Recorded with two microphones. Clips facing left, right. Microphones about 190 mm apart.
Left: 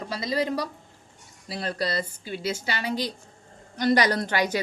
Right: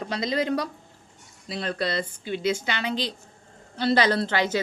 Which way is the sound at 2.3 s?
5° left (ahead or behind).